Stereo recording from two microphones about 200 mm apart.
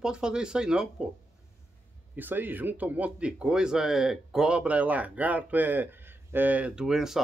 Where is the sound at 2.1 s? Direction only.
10° right (ahead or behind).